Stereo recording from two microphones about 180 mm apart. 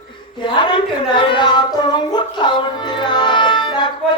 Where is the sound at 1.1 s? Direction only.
25° left (ahead or behind).